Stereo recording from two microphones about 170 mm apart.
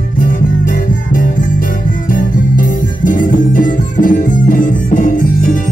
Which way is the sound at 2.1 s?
55° left (ahead or behind).